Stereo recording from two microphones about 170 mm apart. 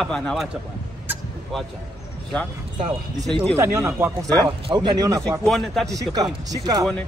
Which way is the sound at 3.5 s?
15° right (ahead or behind).